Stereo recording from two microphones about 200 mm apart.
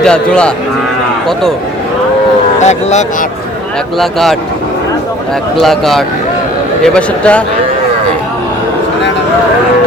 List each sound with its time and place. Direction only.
0.0 s speech: 5° left (ahead or behind)
2.6 s speech: 35° left (ahead or behind)
3.9 s speech: centre (ahead or behind)
5.5 s speech: centre (ahead or behind)